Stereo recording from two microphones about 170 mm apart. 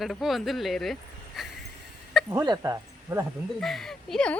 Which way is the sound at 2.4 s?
20° right (ahead or behind).